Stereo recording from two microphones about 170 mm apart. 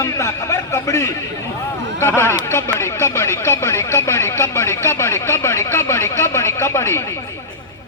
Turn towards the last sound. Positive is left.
turn(degrees=15)  # may be behind; listen again after turning